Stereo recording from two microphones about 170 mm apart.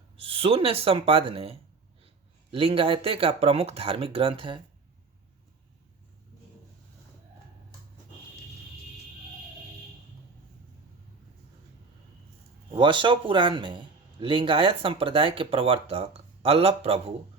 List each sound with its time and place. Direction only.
0.2 s speech: 35° right (ahead or behind)
12.7 s speech: 30° right (ahead or behind)